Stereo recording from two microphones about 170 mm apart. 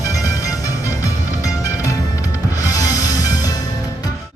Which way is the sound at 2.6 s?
20° left (ahead or behind).